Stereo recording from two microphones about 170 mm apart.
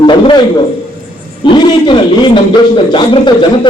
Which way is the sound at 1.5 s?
30° left (ahead or behind).